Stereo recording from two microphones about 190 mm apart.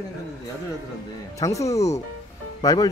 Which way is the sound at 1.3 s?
15° left (ahead or behind).